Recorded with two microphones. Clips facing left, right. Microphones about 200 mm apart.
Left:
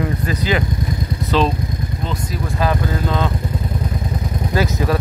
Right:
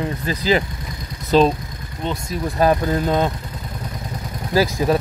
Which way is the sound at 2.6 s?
45° right (ahead or behind).